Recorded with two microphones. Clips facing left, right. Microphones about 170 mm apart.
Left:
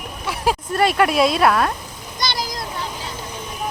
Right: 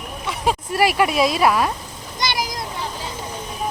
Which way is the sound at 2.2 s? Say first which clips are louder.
Right 1 dB; 20° right (ahead or behind).